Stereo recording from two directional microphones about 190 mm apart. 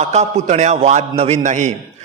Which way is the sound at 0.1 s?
35° right (ahead or behind).